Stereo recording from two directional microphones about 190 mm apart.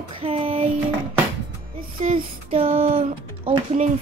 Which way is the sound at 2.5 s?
30° right (ahead or behind).